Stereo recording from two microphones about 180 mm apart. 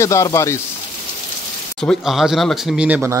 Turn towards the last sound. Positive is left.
turn(degrees=-10)  # may be behind; listen again after turning